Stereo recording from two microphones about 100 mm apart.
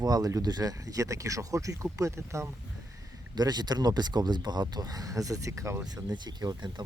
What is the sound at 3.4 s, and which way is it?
Speech, 45° right (ahead or behind).